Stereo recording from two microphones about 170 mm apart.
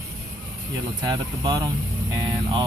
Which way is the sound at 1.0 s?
25° right (ahead or behind).